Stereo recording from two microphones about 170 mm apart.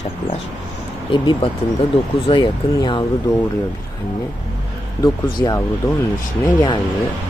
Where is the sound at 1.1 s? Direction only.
30° left (ahead or behind).